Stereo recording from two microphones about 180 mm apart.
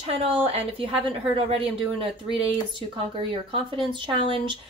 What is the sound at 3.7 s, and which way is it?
Speech, 30° right (ahead or behind).